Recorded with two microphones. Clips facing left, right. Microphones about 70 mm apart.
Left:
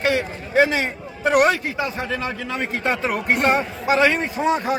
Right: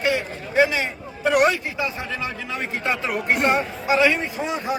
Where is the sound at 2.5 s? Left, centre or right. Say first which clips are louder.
Left 2 dB; left.